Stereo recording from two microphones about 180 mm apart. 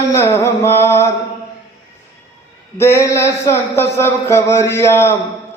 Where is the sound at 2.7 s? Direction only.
15° left (ahead or behind).